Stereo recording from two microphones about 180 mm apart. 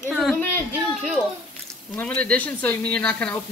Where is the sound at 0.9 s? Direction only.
5° right (ahead or behind).